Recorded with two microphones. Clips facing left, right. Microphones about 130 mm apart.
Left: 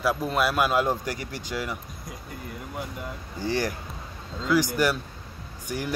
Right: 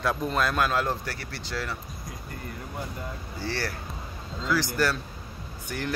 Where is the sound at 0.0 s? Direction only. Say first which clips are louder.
Left 2 dB; 5° left (ahead or behind).